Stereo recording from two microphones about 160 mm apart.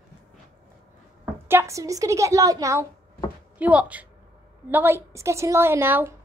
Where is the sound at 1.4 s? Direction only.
15° right (ahead or behind).